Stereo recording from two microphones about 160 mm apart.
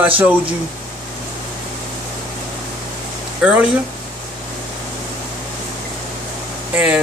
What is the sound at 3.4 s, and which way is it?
Speech, 5° right (ahead or behind).